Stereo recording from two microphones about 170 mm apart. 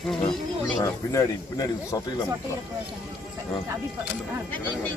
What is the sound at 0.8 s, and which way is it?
A man's voice, 20° left (ahead or behind).